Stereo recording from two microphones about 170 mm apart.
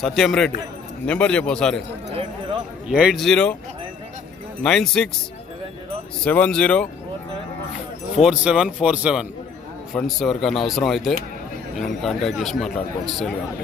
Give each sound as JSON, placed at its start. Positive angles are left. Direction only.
{"t": 0.0, "sound": "a man's voice", "side_deg": 0}
{"t": 2.9, "sound": "speech", "side_deg": -5}
{"t": 4.6, "sound": "speech", "side_deg": 5}
{"t": 6.2, "sound": "a man's voice", "side_deg": 5}
{"t": 8.2, "sound": "speech", "side_deg": -5}